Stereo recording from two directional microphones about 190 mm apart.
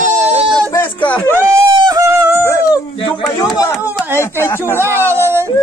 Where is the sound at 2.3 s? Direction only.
15° left (ahead or behind).